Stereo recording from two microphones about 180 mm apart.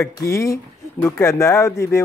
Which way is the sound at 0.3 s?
15° left (ahead or behind).